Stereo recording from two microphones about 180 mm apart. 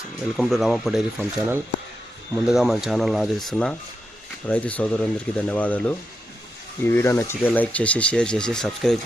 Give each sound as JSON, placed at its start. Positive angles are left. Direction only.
{"t": 0.3, "sound": "speech", "side_deg": 0}
{"t": 2.3, "sound": "speech", "side_deg": -5}